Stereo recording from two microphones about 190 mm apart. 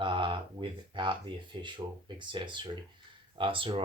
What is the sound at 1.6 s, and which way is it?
Speech, 25° right (ahead or behind).